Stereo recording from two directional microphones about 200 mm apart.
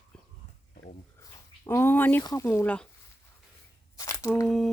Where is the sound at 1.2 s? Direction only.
15° left (ahead or behind).